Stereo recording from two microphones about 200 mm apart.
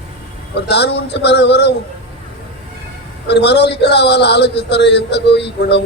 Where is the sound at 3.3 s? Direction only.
55° left (ahead or behind).